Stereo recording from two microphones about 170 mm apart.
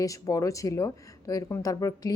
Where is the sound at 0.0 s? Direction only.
20° left (ahead or behind).